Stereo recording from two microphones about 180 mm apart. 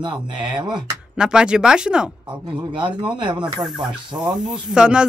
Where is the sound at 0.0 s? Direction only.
25° right (ahead or behind).